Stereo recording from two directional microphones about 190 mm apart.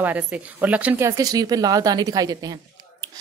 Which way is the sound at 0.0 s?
10° right (ahead or behind).